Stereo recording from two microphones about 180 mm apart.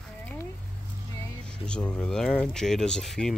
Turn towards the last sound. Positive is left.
turn(degrees=0)  # may be behind; listen again after turning